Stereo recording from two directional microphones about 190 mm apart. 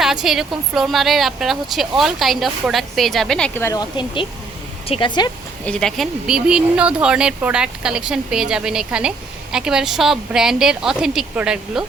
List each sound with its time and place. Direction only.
0.0 s speech: centre (ahead or behind); by 5.3 s 25° left (ahead or behind)
5.6 s speech: 5° left (ahead or behind)